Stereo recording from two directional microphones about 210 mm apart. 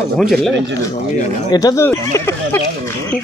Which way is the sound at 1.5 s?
15° left (ahead or behind).